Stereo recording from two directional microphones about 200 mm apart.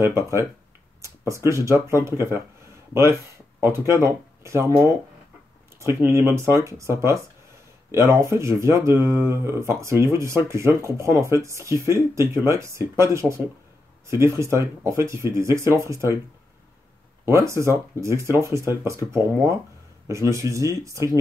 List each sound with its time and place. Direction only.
0.0 s speech: 15° right (ahead or behind)
17.2 s speech: 15° right (ahead or behind)